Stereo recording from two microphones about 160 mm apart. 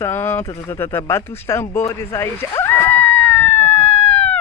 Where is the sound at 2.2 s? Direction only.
15° left (ahead or behind).